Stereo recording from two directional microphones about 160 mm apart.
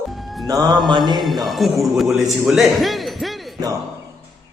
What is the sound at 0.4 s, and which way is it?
Speech, 25° right (ahead or behind).